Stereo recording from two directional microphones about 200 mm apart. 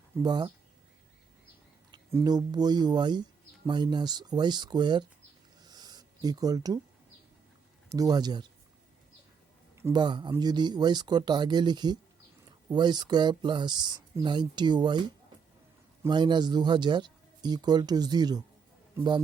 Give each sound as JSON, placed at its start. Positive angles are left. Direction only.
{"t": 0.2, "sound": "speech", "side_deg": -20}
{"t": 1.9, "sound": "speech", "side_deg": -15}
{"t": 5.6, "sound": "a sound", "side_deg": -20}
{"t": 7.9, "sound": "speech", "side_deg": -20}
{"t": 9.7, "sound": "speech", "side_deg": -15}
{"t": 16.0, "sound": "speech", "side_deg": -20}